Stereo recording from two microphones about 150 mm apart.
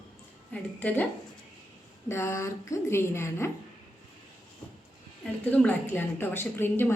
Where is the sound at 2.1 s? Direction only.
15° left (ahead or behind).